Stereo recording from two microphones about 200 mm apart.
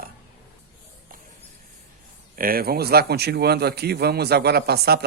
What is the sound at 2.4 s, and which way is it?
Speech, 45° right (ahead or behind).